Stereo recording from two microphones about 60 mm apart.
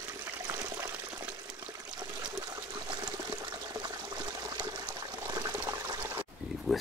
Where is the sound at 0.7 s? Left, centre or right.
Right.